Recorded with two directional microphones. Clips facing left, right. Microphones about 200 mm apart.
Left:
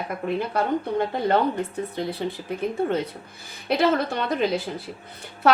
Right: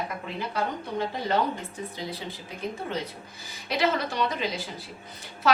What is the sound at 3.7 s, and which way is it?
Speech, 55° left (ahead or behind).